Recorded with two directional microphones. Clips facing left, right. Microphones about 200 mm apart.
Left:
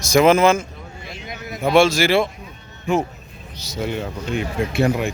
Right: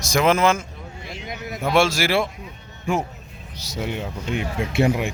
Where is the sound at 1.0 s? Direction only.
20° right (ahead or behind).